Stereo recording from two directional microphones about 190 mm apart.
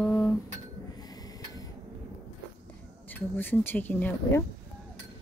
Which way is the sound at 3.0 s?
10° left (ahead or behind).